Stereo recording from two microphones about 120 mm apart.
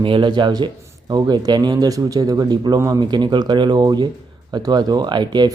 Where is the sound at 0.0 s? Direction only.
45° right (ahead or behind).